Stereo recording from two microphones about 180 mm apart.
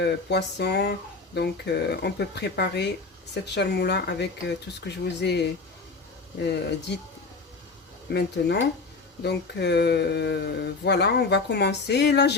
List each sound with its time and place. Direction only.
0.0 s speech: 70° left (ahead or behind)
8.1 s speech: 65° left (ahead or behind)